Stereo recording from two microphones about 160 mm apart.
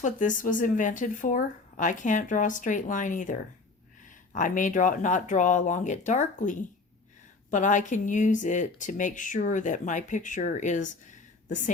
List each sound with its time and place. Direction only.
0.0 s speech: 55° left (ahead or behind)